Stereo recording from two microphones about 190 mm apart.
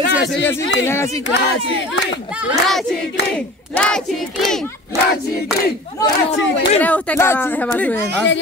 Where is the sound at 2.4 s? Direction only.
Centre (ahead or behind).